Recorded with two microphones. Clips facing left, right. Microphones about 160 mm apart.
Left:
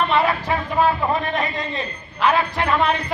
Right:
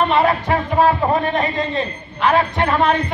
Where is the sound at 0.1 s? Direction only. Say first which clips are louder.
Right 3 dB; 35° right (ahead or behind).